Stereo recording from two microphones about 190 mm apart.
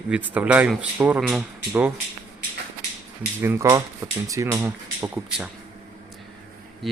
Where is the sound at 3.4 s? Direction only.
15° right (ahead or behind).